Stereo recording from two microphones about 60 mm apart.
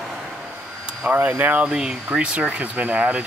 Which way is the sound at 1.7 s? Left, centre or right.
Centre.